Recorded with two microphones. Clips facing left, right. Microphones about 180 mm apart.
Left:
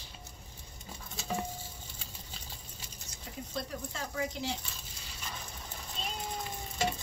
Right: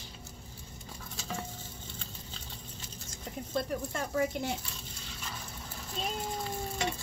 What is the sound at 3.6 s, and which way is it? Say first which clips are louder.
Speech: right 6 dB; 55° right (ahead or behind).